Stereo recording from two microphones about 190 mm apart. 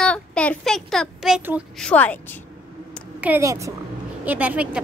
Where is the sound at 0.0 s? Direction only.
5° left (ahead or behind).